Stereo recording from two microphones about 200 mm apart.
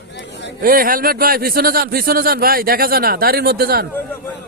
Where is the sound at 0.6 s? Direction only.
45° right (ahead or behind).